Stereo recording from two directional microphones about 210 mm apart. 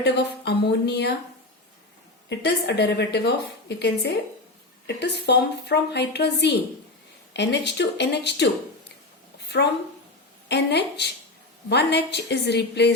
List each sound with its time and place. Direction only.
0.0 s a woman's voice: 55° left (ahead or behind)
2.4 s a woman's voice: 55° left (ahead or behind)
9.5 s a woman's voice: 55° left (ahead or behind)